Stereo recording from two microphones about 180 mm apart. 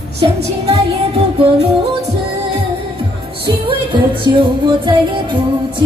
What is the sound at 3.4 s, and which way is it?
Music, 30° right (ahead or behind).